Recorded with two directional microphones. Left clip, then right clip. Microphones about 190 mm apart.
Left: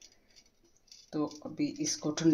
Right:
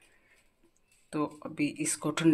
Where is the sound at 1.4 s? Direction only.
10° right (ahead or behind).